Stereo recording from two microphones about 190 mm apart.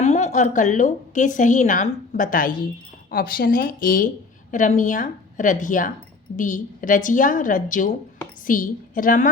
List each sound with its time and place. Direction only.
0.0 s a woman's voice: 35° left (ahead or behind)